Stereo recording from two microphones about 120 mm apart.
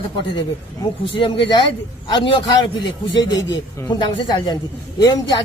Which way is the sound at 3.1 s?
35° left (ahead or behind).